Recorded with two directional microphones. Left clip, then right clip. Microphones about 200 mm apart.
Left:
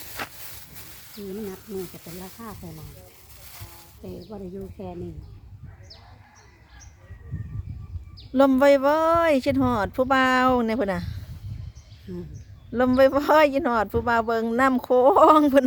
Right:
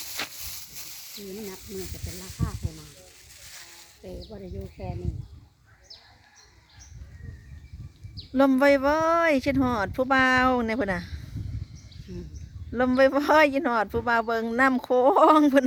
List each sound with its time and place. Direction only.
0.3 s a sound: 45° left (ahead or behind)
4.3 s speech: 45° left (ahead or behind)
8.3 s speech: 5° left (ahead or behind)
12.1 s speech: 35° left (ahead or behind)
12.7 s speech: 5° left (ahead or behind)